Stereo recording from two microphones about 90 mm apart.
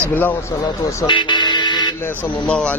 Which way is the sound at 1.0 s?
60° left (ahead or behind).